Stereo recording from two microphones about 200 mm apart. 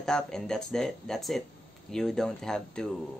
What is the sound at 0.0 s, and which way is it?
Speech, 5° left (ahead or behind).